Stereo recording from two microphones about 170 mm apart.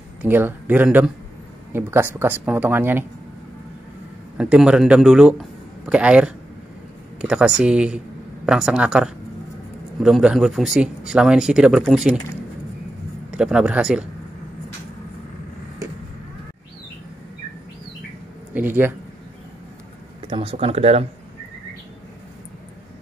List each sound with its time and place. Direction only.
0.2 s speech: 10° right (ahead or behind)
4.4 s speech: 5° right (ahead or behind)
13.3 s speech: 5° right (ahead or behind)
18.5 s speech: 10° right (ahead or behind)
20.2 s speech: 30° right (ahead or behind)